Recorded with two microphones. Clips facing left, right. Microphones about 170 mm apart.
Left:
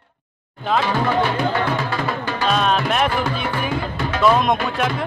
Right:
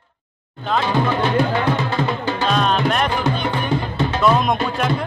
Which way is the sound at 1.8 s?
25° right (ahead or behind).